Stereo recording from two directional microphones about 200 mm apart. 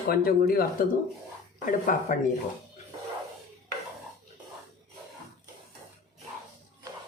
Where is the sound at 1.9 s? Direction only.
40° left (ahead or behind).